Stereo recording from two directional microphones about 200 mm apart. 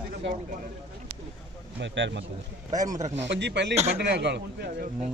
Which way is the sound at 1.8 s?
65° right (ahead or behind).